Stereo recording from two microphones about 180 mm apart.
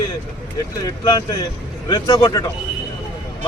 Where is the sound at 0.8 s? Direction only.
20° left (ahead or behind).